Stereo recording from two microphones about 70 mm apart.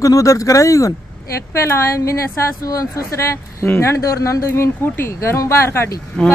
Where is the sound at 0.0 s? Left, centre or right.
Left.